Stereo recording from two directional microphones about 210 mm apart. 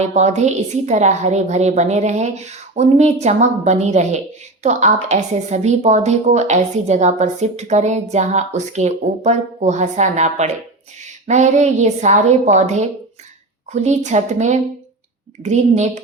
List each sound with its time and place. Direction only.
0.0 s a woman's voice: 35° right (ahead or behind)